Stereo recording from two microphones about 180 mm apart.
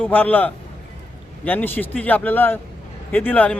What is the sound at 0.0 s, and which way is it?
Speech, 10° left (ahead or behind).